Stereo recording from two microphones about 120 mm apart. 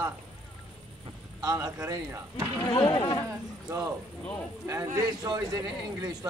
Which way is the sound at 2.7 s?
40° left (ahead or behind).